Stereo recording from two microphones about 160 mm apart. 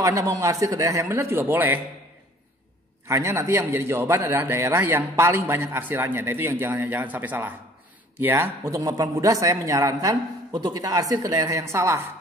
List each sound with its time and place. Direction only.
0.0 s speech: 20° right (ahead or behind)
3.1 s a man's voice: 20° right (ahead or behind)